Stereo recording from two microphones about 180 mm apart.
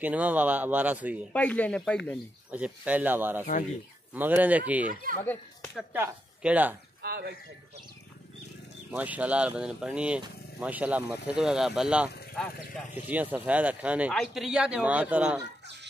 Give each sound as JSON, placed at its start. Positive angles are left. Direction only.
{"t": 0.0, "sound": "speech", "side_deg": -10}
{"t": 1.3, "sound": "speech", "side_deg": 10}
{"t": 2.5, "sound": "speech", "side_deg": -5}
{"t": 5.2, "sound": "speech", "side_deg": 10}
{"t": 5.9, "sound": "speech", "side_deg": -10}
{"t": 7.0, "sound": "speech", "side_deg": -60}
{"t": 8.9, "sound": "speech", "side_deg": -10}
{"t": 12.9, "sound": "speech", "side_deg": -10}